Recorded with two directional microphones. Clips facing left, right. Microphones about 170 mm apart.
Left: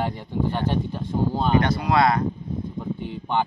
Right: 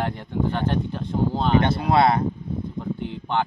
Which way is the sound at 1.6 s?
25° right (ahead or behind).